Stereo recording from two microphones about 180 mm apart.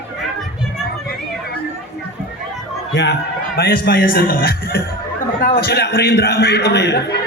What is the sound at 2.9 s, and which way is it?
A man's voice, 70° left (ahead or behind).